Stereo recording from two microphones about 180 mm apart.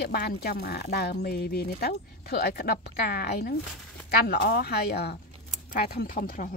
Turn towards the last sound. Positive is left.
turn(degrees=50)  # may be behind; listen again after turning